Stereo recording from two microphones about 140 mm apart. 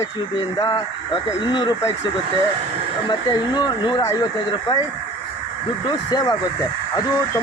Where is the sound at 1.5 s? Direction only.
30° left (ahead or behind).